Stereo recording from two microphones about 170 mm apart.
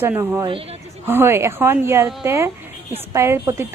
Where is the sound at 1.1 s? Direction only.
15° right (ahead or behind).